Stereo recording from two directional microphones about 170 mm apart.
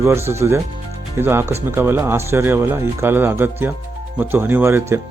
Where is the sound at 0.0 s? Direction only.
15° right (ahead or behind).